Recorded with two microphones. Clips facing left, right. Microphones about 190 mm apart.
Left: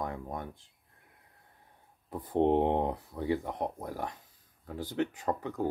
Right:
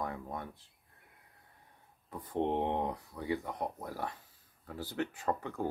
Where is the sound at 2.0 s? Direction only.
30° left (ahead or behind).